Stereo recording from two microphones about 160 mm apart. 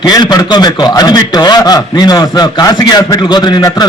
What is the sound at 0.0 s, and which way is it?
A man's voice, 25° left (ahead or behind).